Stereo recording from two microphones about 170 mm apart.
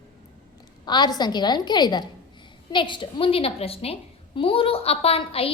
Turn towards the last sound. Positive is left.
turn(degrees=35)  # may be behind; listen again after turning